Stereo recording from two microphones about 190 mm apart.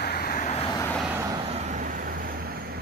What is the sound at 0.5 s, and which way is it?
Vehicle, 30° left (ahead or behind).